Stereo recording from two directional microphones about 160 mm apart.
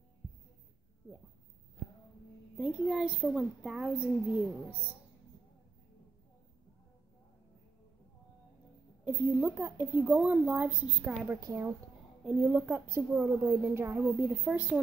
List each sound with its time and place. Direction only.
2.5 s a child's voice: 5° right (ahead or behind)
9.0 s a woman's voice: 10° right (ahead or behind)
11.3 s a woman's voice: 20° right (ahead or behind)
12.3 s a woman's voice: 5° right (ahead or behind)